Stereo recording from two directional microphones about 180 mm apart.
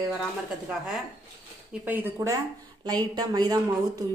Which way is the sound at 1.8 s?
10° right (ahead or behind).